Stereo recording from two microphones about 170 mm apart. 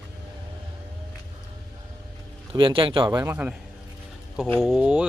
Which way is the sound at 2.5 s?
30° right (ahead or behind).